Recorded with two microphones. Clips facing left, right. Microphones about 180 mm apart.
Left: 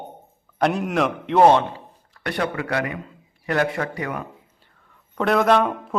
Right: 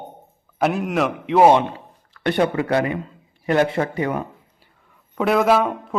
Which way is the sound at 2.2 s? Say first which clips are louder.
Right 6 dB; 25° right (ahead or behind).